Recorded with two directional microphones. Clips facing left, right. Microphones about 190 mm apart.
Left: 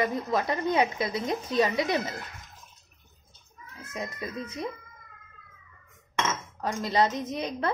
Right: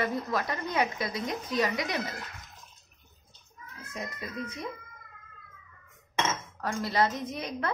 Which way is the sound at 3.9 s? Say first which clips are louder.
Left 3 dB; 25° left (ahead or behind).